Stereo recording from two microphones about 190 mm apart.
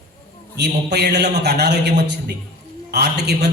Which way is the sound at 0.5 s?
60° right (ahead or behind).